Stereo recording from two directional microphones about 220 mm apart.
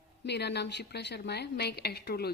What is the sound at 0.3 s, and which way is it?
A woman's voice, 50° left (ahead or behind).